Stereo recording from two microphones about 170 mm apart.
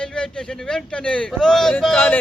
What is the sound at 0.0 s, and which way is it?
Speech, 5° left (ahead or behind).